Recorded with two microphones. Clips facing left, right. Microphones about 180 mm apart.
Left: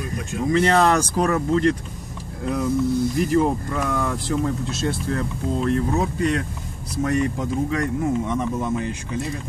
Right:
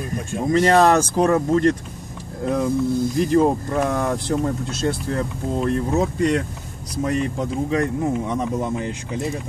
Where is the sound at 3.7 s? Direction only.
45° right (ahead or behind).